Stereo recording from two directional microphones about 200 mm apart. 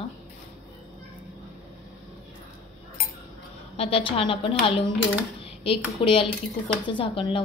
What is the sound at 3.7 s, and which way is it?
A woman's voice, 30° left (ahead or behind).